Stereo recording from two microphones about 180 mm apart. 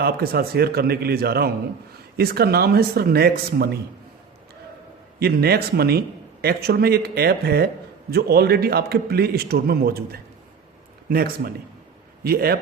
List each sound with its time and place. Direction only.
0.0 s a man's voice: 60° right (ahead or behind)
5.2 s a man's voice: 60° right (ahead or behind)